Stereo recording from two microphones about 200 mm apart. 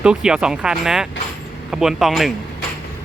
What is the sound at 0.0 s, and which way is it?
Speech, 5° right (ahead or behind).